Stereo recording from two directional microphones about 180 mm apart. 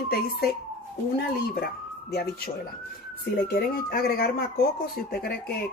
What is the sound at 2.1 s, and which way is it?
Speech, 60° left (ahead or behind).